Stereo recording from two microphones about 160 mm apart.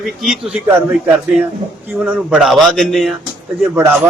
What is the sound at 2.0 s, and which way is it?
A man's voice, 5° right (ahead or behind).